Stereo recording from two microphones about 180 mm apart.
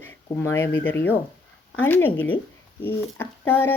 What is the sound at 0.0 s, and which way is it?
Speech, 10° left (ahead or behind).